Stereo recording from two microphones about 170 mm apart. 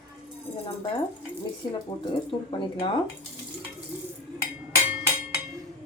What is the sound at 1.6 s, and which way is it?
Speech, 25° left (ahead or behind).